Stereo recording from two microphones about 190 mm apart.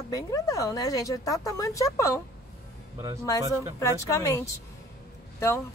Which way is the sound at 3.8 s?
15° left (ahead or behind).